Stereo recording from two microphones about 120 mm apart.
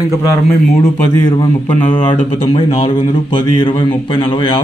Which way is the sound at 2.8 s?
45° left (ahead or behind).